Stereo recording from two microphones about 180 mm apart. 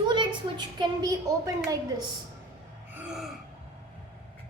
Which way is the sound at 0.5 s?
25° right (ahead or behind).